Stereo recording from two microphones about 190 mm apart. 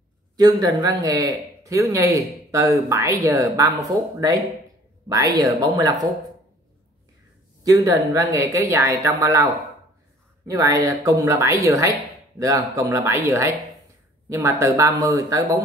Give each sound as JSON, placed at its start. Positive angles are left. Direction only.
{"t": 0.4, "sound": "speech", "side_deg": -20}
{"t": 5.0, "sound": "speech", "side_deg": -20}
{"t": 7.6, "sound": "speech", "side_deg": -20}